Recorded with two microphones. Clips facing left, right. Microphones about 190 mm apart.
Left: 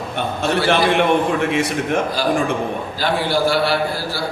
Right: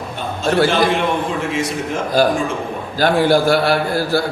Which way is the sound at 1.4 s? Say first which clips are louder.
Left 2 dB; 60° left (ahead or behind).